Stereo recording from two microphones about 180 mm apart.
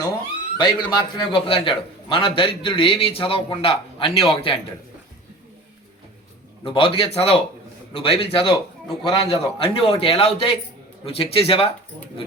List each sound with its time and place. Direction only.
0.5 s a man's voice: 25° left (ahead or behind)
6.7 s a man's voice: 30° left (ahead or behind)